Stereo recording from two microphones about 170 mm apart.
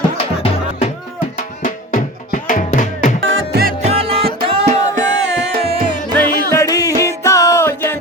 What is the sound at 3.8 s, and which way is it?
Music, 35° right (ahead or behind).